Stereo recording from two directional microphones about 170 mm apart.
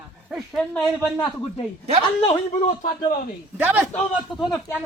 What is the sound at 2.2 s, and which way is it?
Speech, 50° left (ahead or behind).